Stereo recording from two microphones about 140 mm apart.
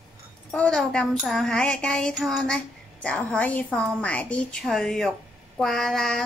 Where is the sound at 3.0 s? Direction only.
10° left (ahead or behind).